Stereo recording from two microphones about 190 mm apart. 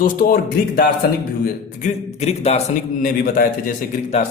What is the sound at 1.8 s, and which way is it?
Speech, 35° left (ahead or behind).